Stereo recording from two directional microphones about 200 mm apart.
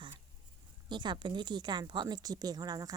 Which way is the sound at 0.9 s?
25° right (ahead or behind).